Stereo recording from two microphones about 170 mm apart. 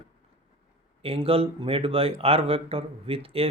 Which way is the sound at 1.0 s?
35° right (ahead or behind).